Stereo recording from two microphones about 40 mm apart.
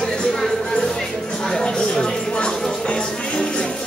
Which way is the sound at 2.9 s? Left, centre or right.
Left.